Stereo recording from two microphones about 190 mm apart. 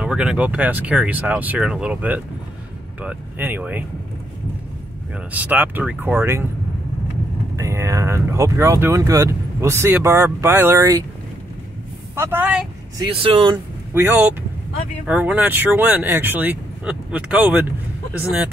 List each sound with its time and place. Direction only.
0.0 s speech: 5° right (ahead or behind)
5.3 s speech: 10° right (ahead or behind)
7.5 s speech: 15° right (ahead or behind)
12.2 s speech: 10° right (ahead or behind)
13.0 s speech: 30° right (ahead or behind)
13.9 s speech: 10° right (ahead or behind)